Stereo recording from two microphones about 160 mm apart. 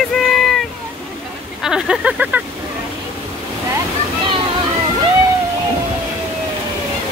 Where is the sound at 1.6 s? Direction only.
5° right (ahead or behind).